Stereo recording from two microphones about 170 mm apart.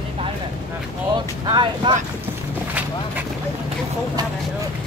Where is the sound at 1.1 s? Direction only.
25° right (ahead or behind).